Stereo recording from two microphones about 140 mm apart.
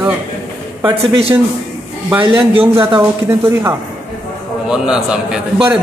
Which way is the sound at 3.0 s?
15° right (ahead or behind).